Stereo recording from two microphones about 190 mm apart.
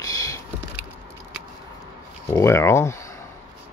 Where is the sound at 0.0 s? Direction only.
20° left (ahead or behind).